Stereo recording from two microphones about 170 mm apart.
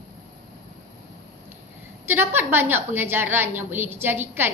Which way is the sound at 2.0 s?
15° right (ahead or behind).